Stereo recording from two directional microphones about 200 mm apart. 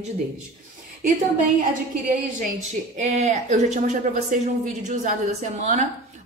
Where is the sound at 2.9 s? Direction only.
35° right (ahead or behind).